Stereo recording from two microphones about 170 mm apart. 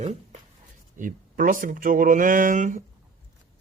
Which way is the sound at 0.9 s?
50° right (ahead or behind).